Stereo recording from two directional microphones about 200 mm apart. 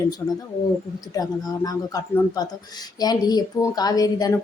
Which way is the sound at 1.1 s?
20° left (ahead or behind).